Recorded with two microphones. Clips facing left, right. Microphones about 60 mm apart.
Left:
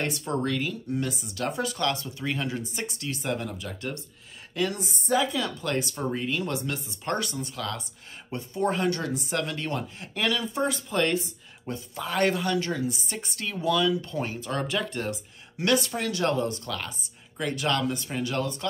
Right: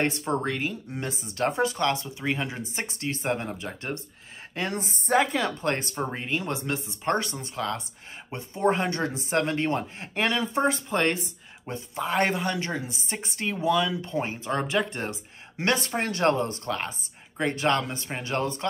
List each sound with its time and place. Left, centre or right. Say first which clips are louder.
0.2 s a woman's voice: right 1 dB; right